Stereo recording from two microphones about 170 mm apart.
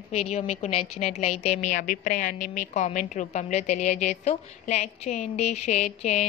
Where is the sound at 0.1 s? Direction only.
40° left (ahead or behind).